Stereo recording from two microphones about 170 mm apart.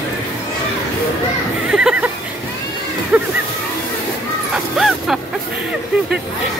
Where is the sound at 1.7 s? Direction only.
5° right (ahead or behind).